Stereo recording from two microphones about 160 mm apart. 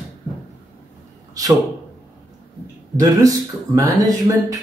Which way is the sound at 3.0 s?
20° right (ahead or behind).